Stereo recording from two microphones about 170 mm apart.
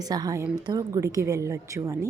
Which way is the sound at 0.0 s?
20° right (ahead or behind).